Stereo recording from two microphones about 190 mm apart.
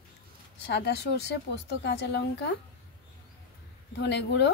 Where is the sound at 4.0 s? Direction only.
65° left (ahead or behind).